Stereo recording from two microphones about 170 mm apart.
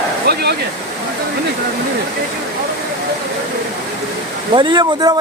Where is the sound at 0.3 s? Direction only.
70° right (ahead or behind).